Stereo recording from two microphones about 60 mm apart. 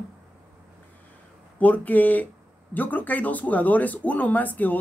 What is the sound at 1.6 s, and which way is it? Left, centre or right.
Speech, left.